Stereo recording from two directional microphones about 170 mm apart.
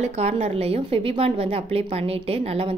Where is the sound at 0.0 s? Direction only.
40° right (ahead or behind).